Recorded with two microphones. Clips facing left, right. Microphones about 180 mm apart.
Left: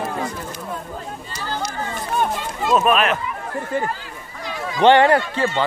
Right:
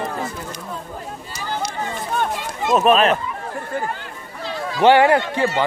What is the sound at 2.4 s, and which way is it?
Run, 10° right (ahead or behind).